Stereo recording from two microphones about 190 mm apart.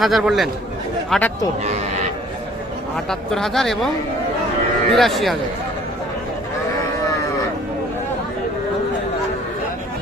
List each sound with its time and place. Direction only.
0.0 s speech: centre (ahead or behind)
1.6 s a sound: 35° right (ahead or behind)
2.9 s speech: centre (ahead or behind)
4.9 s speech: centre (ahead or behind)